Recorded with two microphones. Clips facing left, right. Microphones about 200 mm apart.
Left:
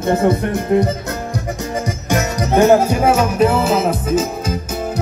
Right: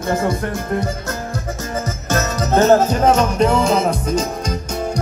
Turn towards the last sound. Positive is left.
turn(degrees=5)  # may be behind; listen again after turning